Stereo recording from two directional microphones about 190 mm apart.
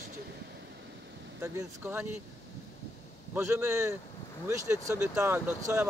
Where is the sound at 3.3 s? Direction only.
15° right (ahead or behind).